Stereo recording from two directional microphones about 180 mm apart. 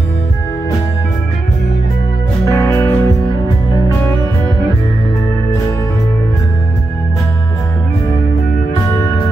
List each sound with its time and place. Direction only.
2.4 s music: 15° left (ahead or behind)